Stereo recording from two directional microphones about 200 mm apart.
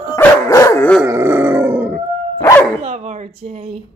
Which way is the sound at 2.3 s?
20° left (ahead or behind).